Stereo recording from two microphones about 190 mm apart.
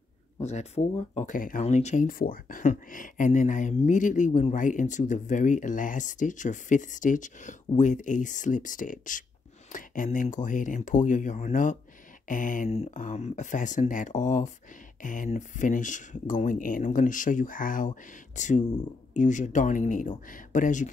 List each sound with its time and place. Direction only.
0.4 s speech: 35° left (ahead or behind)